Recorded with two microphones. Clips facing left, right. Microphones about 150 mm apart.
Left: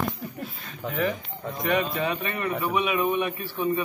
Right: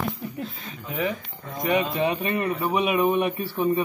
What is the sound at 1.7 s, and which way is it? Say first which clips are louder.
A man's voice: right 3 dB; 25° right (ahead or behind).